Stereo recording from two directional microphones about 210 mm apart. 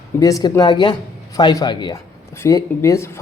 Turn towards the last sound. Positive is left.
turn(degrees=15)  # may be behind; listen again after turning